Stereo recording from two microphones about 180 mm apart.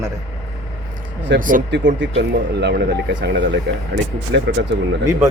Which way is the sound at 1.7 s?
90° right.